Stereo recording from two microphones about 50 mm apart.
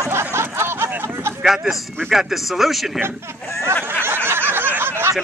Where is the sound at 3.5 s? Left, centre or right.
Right.